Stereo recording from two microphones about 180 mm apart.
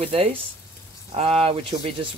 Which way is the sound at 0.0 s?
35° right (ahead or behind).